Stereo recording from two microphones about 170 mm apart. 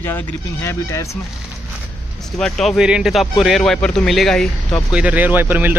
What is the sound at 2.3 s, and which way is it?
Speech, centre (ahead or behind).